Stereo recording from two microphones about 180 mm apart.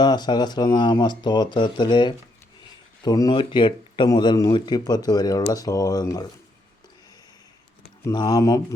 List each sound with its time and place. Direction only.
0.0 s speech: 25° left (ahead or behind)
8.0 s speech: 20° left (ahead or behind)